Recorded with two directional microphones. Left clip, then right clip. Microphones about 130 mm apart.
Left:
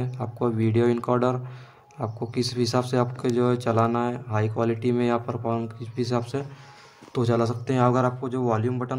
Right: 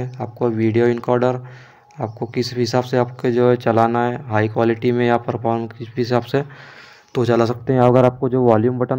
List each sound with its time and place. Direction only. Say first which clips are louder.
0.0 s speech: right 6 dB; 15° right (ahead or behind); by 8.7 s 35° right (ahead or behind)